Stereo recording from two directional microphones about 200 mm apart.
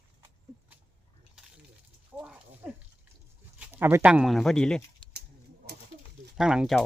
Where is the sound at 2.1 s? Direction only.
5° right (ahead or behind).